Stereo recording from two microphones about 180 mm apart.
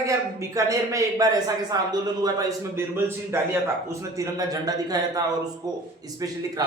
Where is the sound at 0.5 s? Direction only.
15° right (ahead or behind).